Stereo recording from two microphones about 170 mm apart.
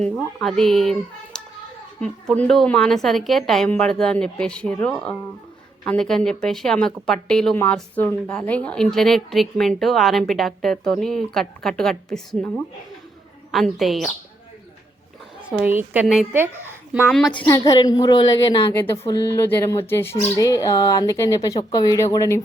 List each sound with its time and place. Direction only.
0.0 s a woman's voice: 5° left (ahead or behind)
15.4 s a woman's voice: 10° right (ahead or behind)
17.1 s a woman's voice: 5° left (ahead or behind)
17.4 s speech: 25° left (ahead or behind)
18.7 s speech: 15° left (ahead or behind)